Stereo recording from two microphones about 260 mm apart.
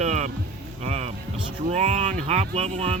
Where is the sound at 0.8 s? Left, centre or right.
Right.